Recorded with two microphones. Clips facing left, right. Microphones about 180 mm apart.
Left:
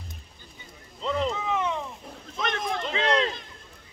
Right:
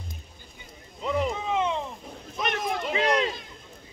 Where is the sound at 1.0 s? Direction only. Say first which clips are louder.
Even; 10° right (ahead or behind).